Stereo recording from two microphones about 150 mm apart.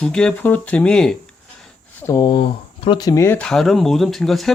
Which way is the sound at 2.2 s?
35° left (ahead or behind).